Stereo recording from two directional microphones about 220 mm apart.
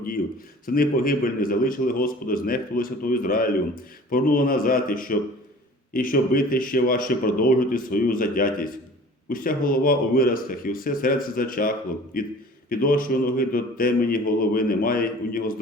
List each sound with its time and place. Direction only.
0.6 s a man's voice: 40° left (ahead or behind)